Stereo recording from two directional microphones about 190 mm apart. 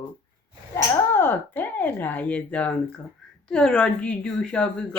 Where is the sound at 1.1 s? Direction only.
10° left (ahead or behind).